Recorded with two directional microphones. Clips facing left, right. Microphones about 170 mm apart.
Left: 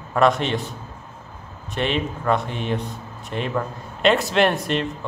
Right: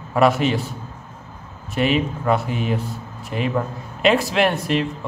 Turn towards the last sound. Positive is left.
turn(degrees=0)  # may be behind; listen again after turning